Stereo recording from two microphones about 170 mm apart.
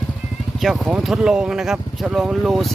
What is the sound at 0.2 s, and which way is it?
Speech, centre (ahead or behind).